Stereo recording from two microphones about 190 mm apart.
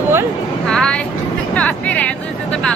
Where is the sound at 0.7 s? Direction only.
5° left (ahead or behind).